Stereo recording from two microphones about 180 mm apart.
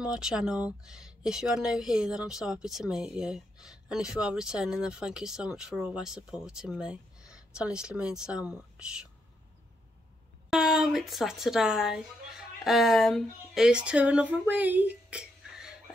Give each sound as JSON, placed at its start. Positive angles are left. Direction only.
{"t": 0.0, "sound": "speech", "side_deg": -5}
{"t": 10.5, "sound": "speech", "side_deg": -5}
{"t": 14.5, "sound": "a sound", "side_deg": -10}